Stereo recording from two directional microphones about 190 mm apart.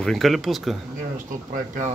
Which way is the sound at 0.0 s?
Centre (ahead or behind).